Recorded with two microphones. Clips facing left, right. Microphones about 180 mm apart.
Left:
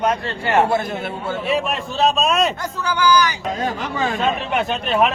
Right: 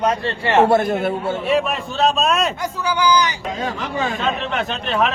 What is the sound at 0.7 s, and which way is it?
Speech, 50° right (ahead or behind).